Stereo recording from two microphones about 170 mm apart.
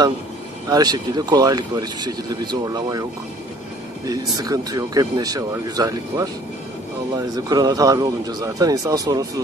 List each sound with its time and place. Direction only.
0.7 s speech: 25° right (ahead or behind)